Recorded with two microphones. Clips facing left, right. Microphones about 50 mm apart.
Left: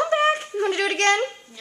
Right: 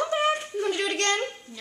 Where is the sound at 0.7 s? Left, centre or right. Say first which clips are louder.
Left 7 dB; left.